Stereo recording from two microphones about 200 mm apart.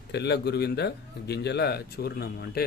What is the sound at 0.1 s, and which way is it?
A man's voice, 55° left (ahead or behind).